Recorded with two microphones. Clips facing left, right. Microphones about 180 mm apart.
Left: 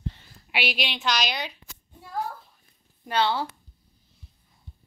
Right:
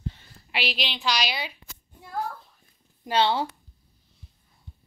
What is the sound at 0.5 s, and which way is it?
A woman's voice, centre (ahead or behind).